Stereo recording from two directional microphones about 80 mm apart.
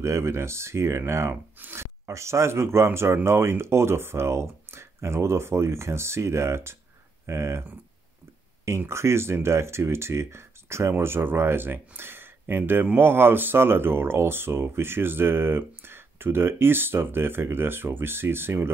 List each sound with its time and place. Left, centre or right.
0.0 s speech: right
1.3 s speech: right
8.6 s speech: right